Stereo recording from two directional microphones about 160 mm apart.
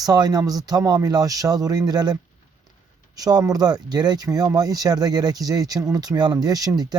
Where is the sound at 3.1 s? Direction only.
25° right (ahead or behind).